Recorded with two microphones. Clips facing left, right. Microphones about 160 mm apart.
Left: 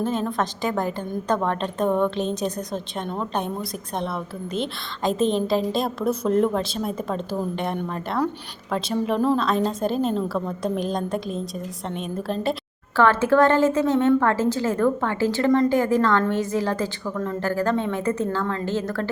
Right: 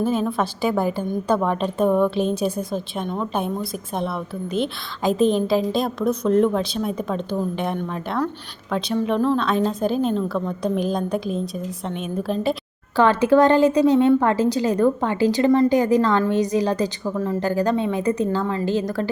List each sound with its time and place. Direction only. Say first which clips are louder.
0.0 s a woman's voice: right 3 dB; 5° right (ahead or behind)
13.0 s a woman's voice: right 2 dB; 15° right (ahead or behind)